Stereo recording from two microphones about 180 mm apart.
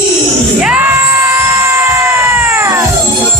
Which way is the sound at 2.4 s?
15° right (ahead or behind).